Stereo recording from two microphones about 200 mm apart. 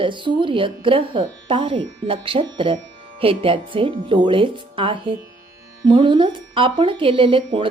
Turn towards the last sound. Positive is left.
turn(degrees=-25)  # may be behind; listen again after turning